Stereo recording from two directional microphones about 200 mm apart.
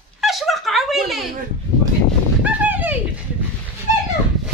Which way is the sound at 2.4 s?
10° right (ahead or behind).